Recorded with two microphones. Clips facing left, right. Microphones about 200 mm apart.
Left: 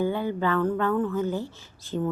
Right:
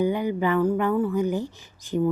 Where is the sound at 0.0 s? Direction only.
15° right (ahead or behind).